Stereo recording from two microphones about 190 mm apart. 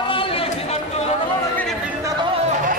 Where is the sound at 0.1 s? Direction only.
30° left (ahead or behind).